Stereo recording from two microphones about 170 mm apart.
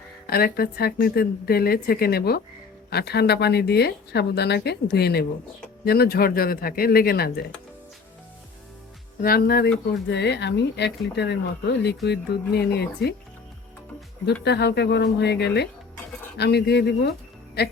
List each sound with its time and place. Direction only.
0.3 s a woman's voice: 65° left (ahead or behind)
9.2 s a woman's voice: 65° left (ahead or behind)
10.1 s speech: 80° left
14.4 s speech: 80° left
17.6 s speech: 70° left (ahead or behind)